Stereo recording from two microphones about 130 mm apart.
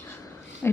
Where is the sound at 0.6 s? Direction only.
15° left (ahead or behind).